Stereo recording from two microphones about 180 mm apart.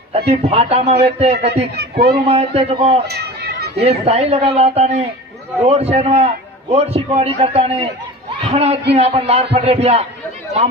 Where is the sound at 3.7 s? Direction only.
35° right (ahead or behind).